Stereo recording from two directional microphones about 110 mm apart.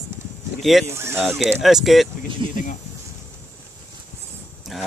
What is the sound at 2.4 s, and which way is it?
Speech, 50° right (ahead or behind).